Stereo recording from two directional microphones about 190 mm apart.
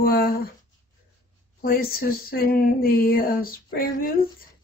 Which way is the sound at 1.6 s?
50° left (ahead or behind).